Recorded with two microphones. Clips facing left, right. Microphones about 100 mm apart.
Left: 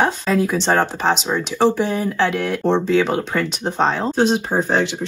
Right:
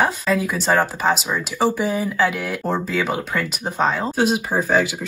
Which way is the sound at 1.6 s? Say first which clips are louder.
Left 2 dB; 5° right (ahead or behind).